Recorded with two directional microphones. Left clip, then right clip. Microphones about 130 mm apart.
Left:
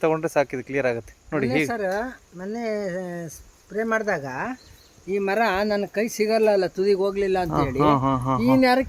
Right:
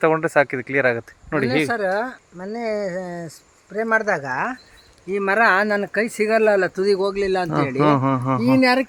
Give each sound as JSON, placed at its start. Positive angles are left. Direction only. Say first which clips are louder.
{"t": 0.0, "sound": "speech", "louder": "right 4 dB", "side_deg": -25}
{"t": 1.5, "sound": "a man's voice", "louder": "right 3 dB", "side_deg": -35}
{"t": 2.4, "sound": "speech", "louder": "right 3 dB", "side_deg": -15}
{"t": 5.1, "sound": "a man's voice", "louder": "right 5 dB", "side_deg": -35}
{"t": 8.4, "sound": "speech", "louder": "right 2 dB", "side_deg": -50}